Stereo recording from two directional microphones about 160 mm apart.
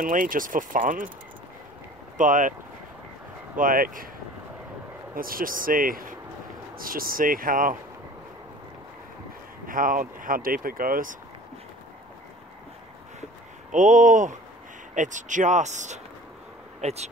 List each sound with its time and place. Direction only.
0.0 s speech: 55° right (ahead or behind)
2.1 s speech: 55° right (ahead or behind)
3.5 s speech: 60° right (ahead or behind)
5.1 s speech: 65° right (ahead or behind)
9.7 s speech: 60° right (ahead or behind)
13.7 s speech: 50° right (ahead or behind)